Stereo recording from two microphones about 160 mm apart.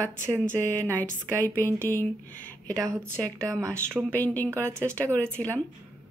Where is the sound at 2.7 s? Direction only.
20° right (ahead or behind).